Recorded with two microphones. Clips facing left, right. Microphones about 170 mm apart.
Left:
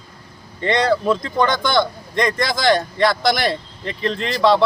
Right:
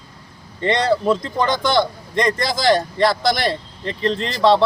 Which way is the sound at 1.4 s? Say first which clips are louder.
Right 1 dB; 30° right (ahead or behind).